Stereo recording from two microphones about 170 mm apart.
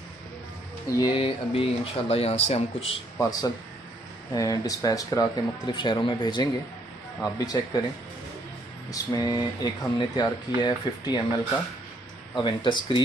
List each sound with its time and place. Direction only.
0.9 s speech: 30° left (ahead or behind)
3.2 s speech: 20° left (ahead or behind)
8.9 s speech: 20° left (ahead or behind)
12.4 s speech: 25° left (ahead or behind)